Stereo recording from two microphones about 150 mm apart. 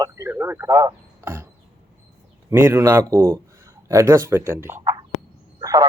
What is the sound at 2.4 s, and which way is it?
A man's voice, 15° right (ahead or behind).